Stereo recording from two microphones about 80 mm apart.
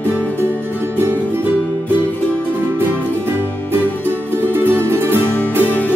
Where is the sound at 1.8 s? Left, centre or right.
Left.